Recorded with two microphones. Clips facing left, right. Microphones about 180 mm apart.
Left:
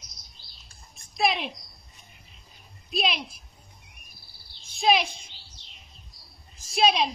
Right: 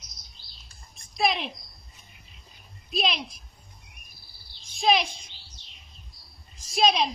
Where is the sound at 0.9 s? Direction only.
5° left (ahead or behind).